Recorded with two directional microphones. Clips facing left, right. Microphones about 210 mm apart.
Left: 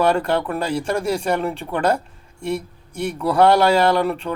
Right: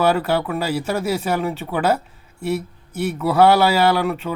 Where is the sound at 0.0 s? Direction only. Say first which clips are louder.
Even; 5° right (ahead or behind).